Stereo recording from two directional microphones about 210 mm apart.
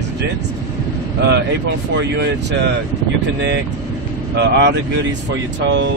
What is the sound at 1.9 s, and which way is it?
Speech, 55° right (ahead or behind).